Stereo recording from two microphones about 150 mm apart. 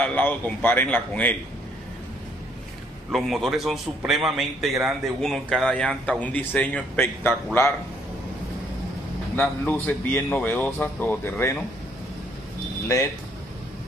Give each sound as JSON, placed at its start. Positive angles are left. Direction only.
{"t": 0.0, "sound": "speech", "side_deg": 10}
{"t": 3.1, "sound": "a man's voice", "side_deg": 0}
{"t": 9.4, "sound": "speech", "side_deg": 10}
{"t": 12.8, "sound": "speech", "side_deg": 20}